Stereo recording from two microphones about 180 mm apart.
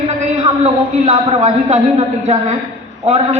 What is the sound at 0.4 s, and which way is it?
A man's voice, 35° right (ahead or behind).